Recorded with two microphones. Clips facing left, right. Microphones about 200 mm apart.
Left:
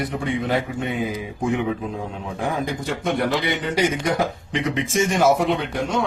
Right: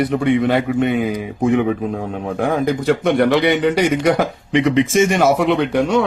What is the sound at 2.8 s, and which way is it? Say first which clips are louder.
A man's voice: right 9 dB; 70° right (ahead or behind).